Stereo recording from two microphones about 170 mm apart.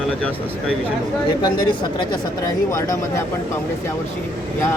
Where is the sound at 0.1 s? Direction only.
5° left (ahead or behind).